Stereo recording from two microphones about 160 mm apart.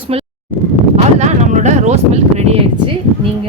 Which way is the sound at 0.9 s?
45° right (ahead or behind).